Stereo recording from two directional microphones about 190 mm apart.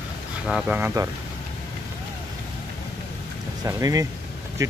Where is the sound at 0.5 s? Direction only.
5° right (ahead or behind).